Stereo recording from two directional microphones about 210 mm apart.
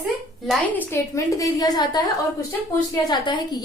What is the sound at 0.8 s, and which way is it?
A woman's voice, 15° left (ahead or behind).